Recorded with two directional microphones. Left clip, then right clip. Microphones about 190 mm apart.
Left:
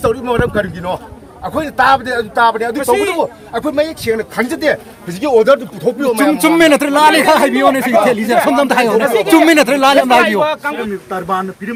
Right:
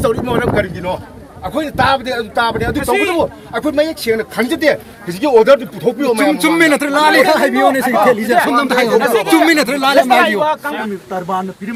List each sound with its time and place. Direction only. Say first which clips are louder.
0.0 s speech: left 1 dB; 20° right (ahead or behind)
2.7 s speech: left 1 dB; 60° left (ahead or behind)
3.2 s speech: even; 10° right (ahead or behind)
6.3 s speech: left 2 dB; 20° left (ahead or behind); by 10.8 s 35° left (ahead or behind)
11.1 s a man's voice: left 1 dB; 5° left (ahead or behind)